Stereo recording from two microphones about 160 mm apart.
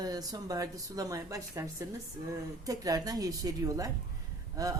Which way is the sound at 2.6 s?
20° right (ahead or behind).